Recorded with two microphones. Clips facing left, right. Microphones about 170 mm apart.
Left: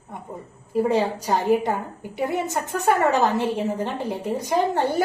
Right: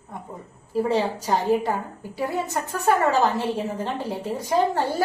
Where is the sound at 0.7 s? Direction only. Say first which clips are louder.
Left 2 dB; 20° left (ahead or behind).